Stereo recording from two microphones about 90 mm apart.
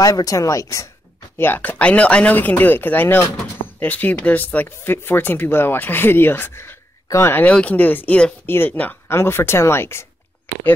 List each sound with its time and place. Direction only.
0.0 s speech: 45° left (ahead or behind)
1.4 s speech: 20° left (ahead or behind)
7.4 s speech: 15° left (ahead or behind)